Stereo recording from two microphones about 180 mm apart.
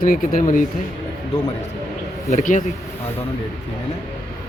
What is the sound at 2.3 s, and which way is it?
Speech, 40° left (ahead or behind).